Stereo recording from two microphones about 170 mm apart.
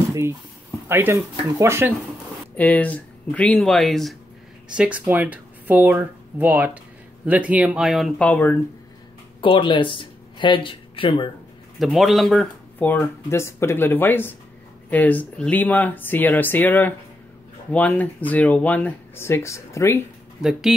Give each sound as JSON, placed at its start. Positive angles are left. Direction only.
{"t": 0.8, "sound": "speech", "side_deg": -15}
{"t": 2.5, "sound": "speech", "side_deg": 10}
{"t": 9.4, "sound": "speech", "side_deg": 30}
{"t": 11.8, "sound": "speech", "side_deg": 0}